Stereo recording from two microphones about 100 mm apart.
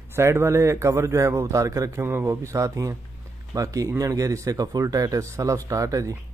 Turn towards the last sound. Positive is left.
turn(degrees=-35)  # may be behind; listen again after turning